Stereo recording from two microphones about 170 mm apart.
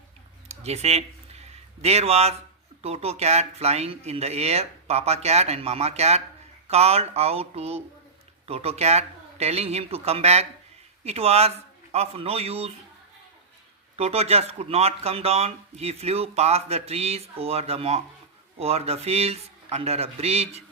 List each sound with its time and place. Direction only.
0.4 s speech: 40° right (ahead or behind)
13.9 s speech: 35° right (ahead or behind)